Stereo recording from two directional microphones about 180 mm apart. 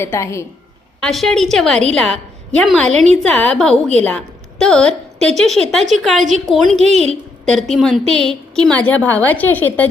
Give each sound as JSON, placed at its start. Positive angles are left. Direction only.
{"t": 0.0, "sound": "a woman's voice", "side_deg": 15}
{"t": 1.0, "sound": "a woman's voice", "side_deg": 0}
{"t": 6.7, "sound": "a woman's voice", "side_deg": -35}
{"t": 7.4, "sound": "a woman's voice", "side_deg": 0}